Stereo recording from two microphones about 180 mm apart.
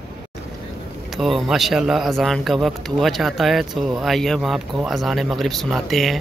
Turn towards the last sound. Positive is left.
turn(degrees=0)  # may be behind; listen again after turning